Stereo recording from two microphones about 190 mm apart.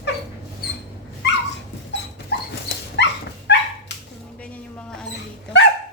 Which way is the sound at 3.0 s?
65° left (ahead or behind).